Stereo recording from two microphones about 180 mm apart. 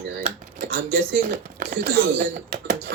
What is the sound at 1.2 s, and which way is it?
Speech, 55° right (ahead or behind).